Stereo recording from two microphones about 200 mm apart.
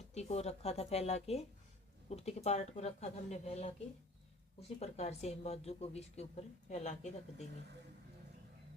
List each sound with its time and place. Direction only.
0.1 s speech: 35° left (ahead or behind)
4.8 s speech: 30° left (ahead or behind)